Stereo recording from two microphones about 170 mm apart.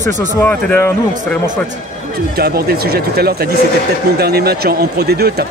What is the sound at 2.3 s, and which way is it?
Speech, 65° right (ahead or behind).